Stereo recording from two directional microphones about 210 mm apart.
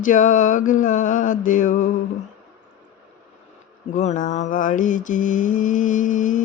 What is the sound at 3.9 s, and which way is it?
Mantra, 35° left (ahead or behind).